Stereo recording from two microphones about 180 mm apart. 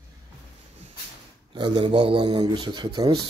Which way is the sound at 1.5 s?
25° right (ahead or behind).